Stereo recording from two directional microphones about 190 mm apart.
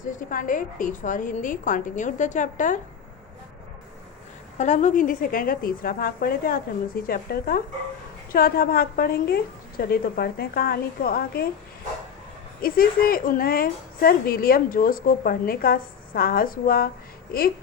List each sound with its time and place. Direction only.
0.0 s a woman's voice: 45° left (ahead or behind)
4.5 s a woman's voice: 40° left (ahead or behind)
12.6 s a woman's voice: 50° left (ahead or behind)